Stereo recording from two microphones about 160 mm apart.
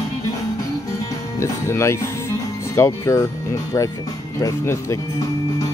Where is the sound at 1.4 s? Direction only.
15° left (ahead or behind).